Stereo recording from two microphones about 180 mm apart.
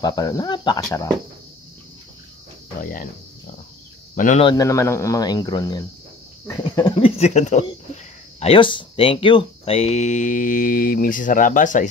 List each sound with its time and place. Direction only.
0.0 s speech: 20° left (ahead or behind)
2.8 s speech: 50° left (ahead or behind)
4.1 s speech: 45° left (ahead or behind)
4.6 s speech: 15° left (ahead or behind); by 11.9 s 45° left (ahead or behind)